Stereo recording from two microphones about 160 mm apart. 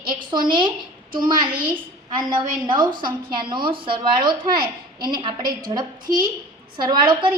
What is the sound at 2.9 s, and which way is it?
Speech, 60° right (ahead or behind).